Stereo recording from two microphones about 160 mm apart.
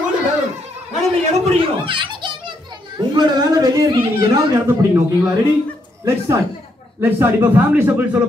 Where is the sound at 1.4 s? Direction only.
35° right (ahead or behind).